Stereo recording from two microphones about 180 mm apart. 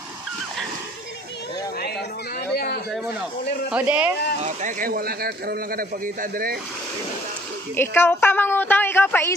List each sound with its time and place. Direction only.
2.4 s a sound: 65° left (ahead or behind)
3.7 s speech: 5° right (ahead or behind)
4.4 s a man's voice: 40° right (ahead or behind)
7.7 s a woman's voice: 15° left (ahead or behind)